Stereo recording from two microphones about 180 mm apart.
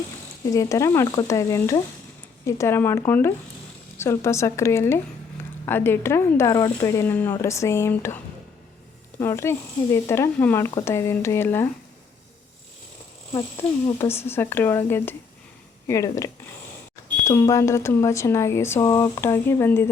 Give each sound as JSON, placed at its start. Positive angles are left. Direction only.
{"t": 0.5, "sound": "speech", "side_deg": 20}
{"t": 13.3, "sound": "speech", "side_deg": 15}